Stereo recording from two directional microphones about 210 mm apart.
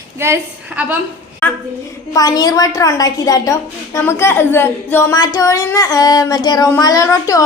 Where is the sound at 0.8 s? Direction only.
5° right (ahead or behind).